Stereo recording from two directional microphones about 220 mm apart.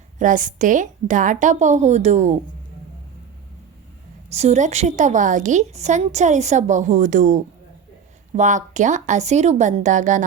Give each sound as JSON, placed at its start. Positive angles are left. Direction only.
{"t": 0.2, "sound": "a woman's voice", "side_deg": -35}
{"t": 4.3, "sound": "a woman's voice", "side_deg": -30}